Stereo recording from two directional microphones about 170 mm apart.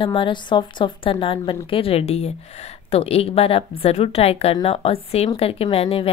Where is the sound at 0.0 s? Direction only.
30° left (ahead or behind).